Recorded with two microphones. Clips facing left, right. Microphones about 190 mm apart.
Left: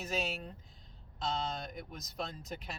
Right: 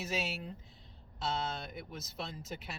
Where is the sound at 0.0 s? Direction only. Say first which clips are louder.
Left 1 dB; 5° right (ahead or behind).